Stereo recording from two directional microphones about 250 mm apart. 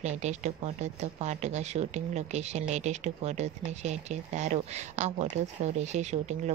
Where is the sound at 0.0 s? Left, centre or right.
Right.